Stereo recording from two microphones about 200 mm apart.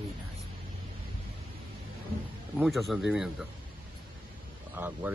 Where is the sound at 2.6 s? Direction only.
Centre (ahead or behind).